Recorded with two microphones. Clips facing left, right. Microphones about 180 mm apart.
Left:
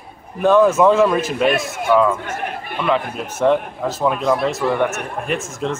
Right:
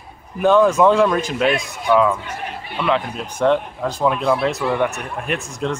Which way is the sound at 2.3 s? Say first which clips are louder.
Left 3 dB; 55° left (ahead or behind).